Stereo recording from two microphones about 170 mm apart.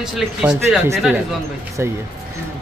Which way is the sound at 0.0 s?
5° right (ahead or behind).